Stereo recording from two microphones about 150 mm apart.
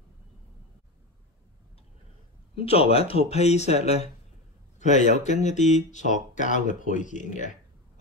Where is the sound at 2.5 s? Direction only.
40° left (ahead or behind).